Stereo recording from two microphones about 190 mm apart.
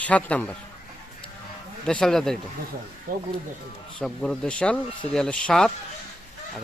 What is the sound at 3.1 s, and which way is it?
Speech, 50° right (ahead or behind).